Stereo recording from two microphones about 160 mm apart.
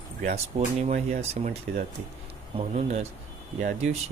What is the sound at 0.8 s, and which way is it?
Speech, 45° right (ahead or behind).